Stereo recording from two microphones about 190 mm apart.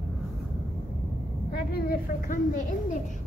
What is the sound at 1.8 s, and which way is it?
Speech, 50° left (ahead or behind).